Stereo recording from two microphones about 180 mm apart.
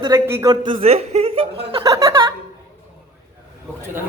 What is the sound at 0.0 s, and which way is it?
Speech, 15° right (ahead or behind).